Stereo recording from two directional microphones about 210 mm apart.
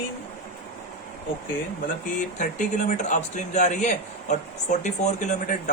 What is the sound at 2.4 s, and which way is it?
A man's voice, 35° left (ahead or behind).